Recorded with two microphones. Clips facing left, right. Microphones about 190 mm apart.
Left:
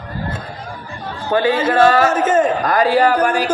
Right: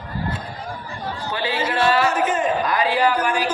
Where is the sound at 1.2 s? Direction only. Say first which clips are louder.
Left 9 dB; 45° left (ahead or behind).